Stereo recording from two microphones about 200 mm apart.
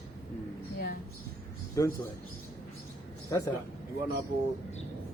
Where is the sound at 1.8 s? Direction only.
15° left (ahead or behind).